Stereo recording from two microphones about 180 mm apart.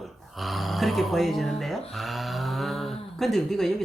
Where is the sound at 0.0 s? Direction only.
Centre (ahead or behind).